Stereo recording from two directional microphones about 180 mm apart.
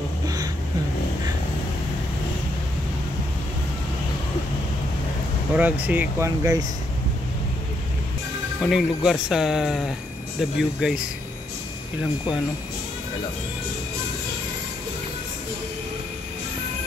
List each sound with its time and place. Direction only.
5.5 s speech: 10° right (ahead or behind)
8.5 s speech: centre (ahead or behind)